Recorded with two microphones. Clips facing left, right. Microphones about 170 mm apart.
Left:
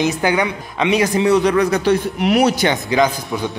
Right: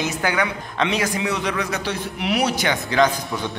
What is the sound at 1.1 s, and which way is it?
A man's voice, 35° left (ahead or behind).